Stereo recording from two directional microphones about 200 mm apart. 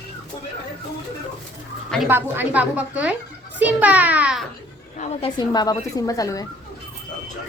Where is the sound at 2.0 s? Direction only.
10° right (ahead or behind).